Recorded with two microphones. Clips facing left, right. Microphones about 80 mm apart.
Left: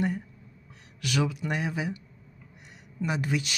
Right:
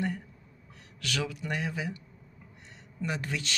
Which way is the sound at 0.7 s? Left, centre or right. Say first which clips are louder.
Left 4 dB; centre.